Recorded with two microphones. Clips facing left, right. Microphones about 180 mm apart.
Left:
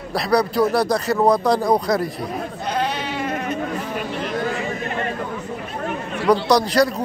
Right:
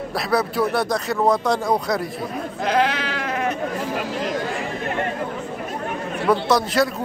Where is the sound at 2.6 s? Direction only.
90° right.